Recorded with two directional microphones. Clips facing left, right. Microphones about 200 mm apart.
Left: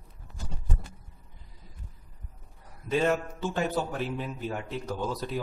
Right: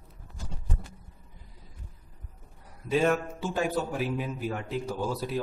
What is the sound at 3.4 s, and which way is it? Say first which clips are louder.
A man's voice: even; 10° right (ahead or behind).